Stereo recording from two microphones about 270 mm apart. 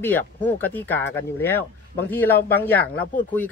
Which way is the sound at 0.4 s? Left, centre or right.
Centre.